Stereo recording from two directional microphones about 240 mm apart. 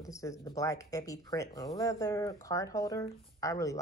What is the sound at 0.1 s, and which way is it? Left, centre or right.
Speech, centre.